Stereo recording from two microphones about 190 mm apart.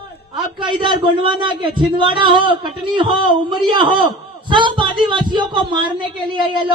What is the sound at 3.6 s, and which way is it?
Speech, 25° right (ahead or behind).